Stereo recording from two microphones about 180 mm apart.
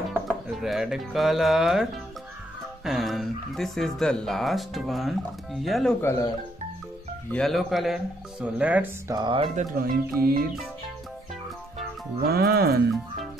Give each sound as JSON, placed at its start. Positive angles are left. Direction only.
{"t": 0.5, "sound": "speech", "side_deg": 0}
{"t": 5.9, "sound": "speech", "side_deg": 15}
{"t": 7.2, "sound": "speech", "side_deg": 5}
{"t": 9.6, "sound": "speech", "side_deg": -55}
{"t": 12.2, "sound": "speech", "side_deg": -60}